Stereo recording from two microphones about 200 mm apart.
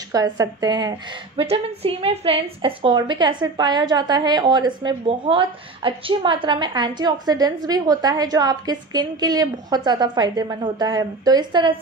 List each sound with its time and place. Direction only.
0.1 s a woman's voice: 20° right (ahead or behind)